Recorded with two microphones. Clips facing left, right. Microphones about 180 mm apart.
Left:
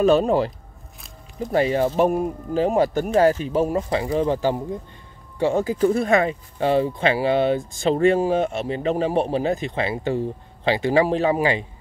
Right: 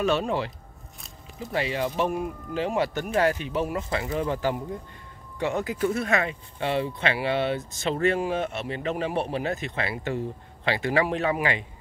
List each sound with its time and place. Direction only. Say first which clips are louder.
0.0 s speech: left 8 dB; 40° left (ahead or behind)
3.7 s speech: left 6 dB; 25° left (ahead or behind)